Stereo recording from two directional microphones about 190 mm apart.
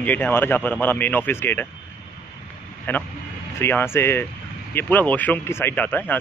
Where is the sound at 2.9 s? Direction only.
10° left (ahead or behind).